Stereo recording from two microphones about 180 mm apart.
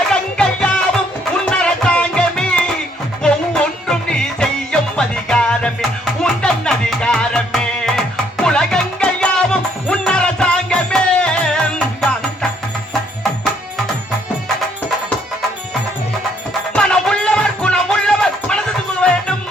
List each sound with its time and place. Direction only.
0.1 s music: 5° left (ahead or behind)
16.7 s music: 5° left (ahead or behind)